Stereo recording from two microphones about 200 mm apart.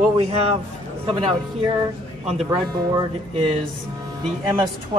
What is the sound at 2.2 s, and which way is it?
Speech, centre (ahead or behind).